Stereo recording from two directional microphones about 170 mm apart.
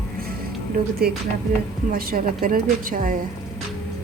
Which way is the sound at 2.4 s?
55° right (ahead or behind).